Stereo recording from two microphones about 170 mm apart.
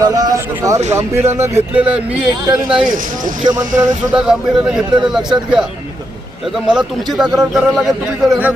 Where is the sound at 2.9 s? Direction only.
50° right (ahead or behind).